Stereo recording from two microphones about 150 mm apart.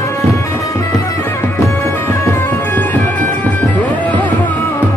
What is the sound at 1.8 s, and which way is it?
Music, 15° left (ahead or behind).